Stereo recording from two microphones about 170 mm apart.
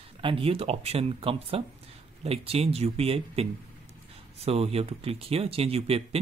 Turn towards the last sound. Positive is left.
turn(degrees=-35)  # may be behind; listen again after turning